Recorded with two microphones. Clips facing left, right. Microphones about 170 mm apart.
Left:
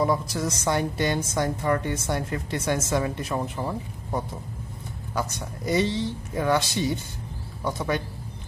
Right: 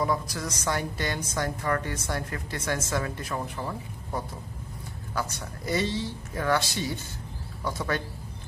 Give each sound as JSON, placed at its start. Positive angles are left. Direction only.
{"t": 0.0, "sound": "a woman's voice", "side_deg": 25}